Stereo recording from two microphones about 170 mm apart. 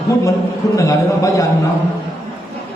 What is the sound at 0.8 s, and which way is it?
Speech, 20° left (ahead or behind).